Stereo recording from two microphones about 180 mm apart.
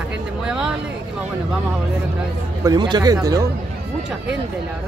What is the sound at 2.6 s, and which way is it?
Speech, 25° right (ahead or behind).